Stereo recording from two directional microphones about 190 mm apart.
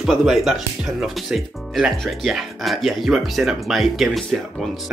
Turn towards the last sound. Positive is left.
turn(degrees=0)  # may be behind; listen again after turning